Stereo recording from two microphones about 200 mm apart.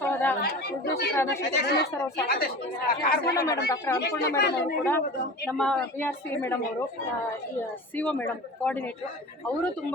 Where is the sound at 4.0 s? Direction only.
55° left (ahead or behind).